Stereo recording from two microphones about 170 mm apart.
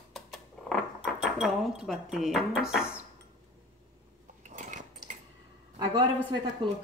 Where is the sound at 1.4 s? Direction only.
Centre (ahead or behind).